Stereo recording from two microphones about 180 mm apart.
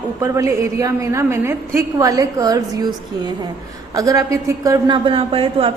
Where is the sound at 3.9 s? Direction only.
20° right (ahead or behind).